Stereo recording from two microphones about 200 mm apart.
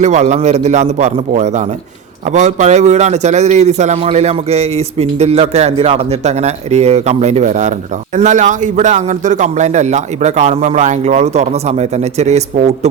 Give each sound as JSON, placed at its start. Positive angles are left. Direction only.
{"t": 0.0, "sound": "a man's voice", "side_deg": -35}